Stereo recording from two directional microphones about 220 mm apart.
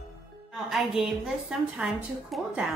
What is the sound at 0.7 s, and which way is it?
Speech, centre (ahead or behind).